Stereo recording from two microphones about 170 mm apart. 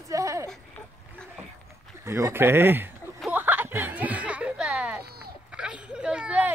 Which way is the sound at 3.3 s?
10° right (ahead or behind).